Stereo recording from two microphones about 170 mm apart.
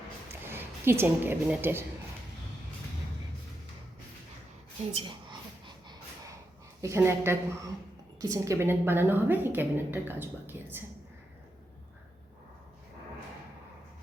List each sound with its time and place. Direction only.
0.3 s a woman's voice: 15° right (ahead or behind)
4.9 s a sound: 30° right (ahead or behind)
6.8 s a woman's voice: 15° right (ahead or behind)